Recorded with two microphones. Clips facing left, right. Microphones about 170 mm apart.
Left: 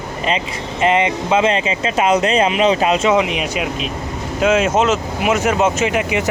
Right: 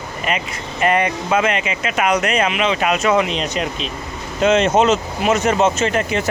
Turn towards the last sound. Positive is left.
turn(degrees=15)  # may be behind; listen again after turning